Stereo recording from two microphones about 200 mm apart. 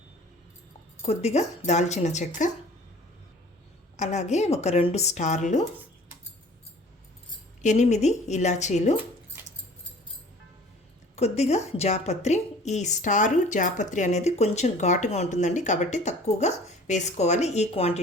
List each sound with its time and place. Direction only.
1.0 s a woman's voice: 35° left (ahead or behind)
3.9 s a woman's voice: 35° left (ahead or behind)
7.6 s a woman's voice: 35° left (ahead or behind)
11.2 s a woman's voice: 35° left (ahead or behind)